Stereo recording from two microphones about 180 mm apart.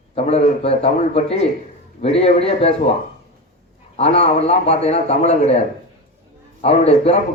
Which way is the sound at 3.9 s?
35° left (ahead or behind).